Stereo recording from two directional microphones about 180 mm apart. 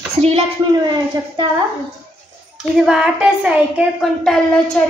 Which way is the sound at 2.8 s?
5° right (ahead or behind).